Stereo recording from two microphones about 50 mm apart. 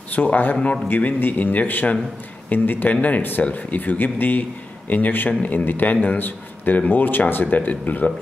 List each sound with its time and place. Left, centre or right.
0.1 s a man's voice: left